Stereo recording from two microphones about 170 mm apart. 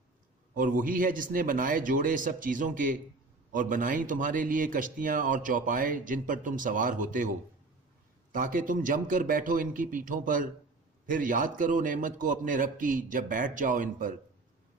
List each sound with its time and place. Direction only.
0.5 s a man's voice: 55° right (ahead or behind)
8.3 s a man's voice: 55° right (ahead or behind)